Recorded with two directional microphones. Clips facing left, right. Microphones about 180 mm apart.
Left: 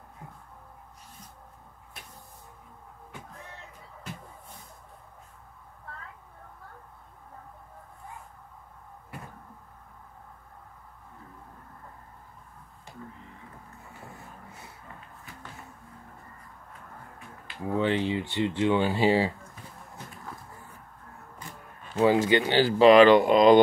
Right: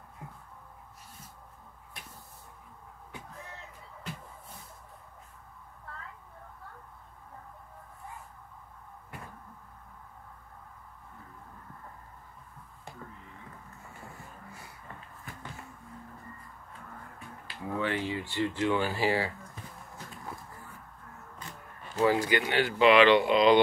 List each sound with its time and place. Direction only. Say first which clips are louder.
17.6 s speech: left 6 dB; 25° left (ahead or behind)
21.9 s speech: left 4 dB; 20° left (ahead or behind); by 23.6 s 45° left (ahead or behind)